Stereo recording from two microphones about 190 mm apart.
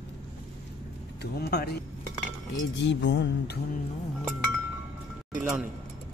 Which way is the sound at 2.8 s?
70° left (ahead or behind).